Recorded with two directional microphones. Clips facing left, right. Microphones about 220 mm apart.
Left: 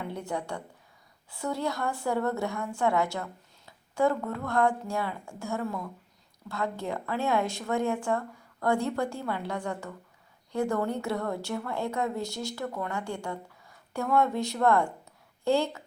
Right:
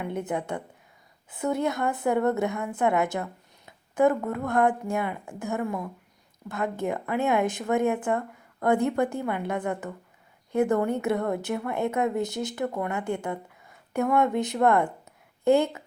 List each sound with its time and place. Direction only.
0.0 s a woman's voice: 20° right (ahead or behind)